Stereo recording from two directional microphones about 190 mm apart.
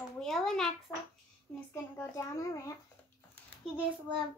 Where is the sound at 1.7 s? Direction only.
15° left (ahead or behind).